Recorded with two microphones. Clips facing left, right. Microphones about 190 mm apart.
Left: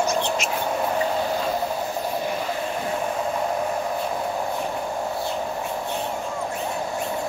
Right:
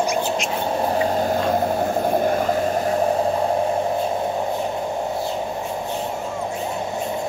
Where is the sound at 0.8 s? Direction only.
35° right (ahead or behind).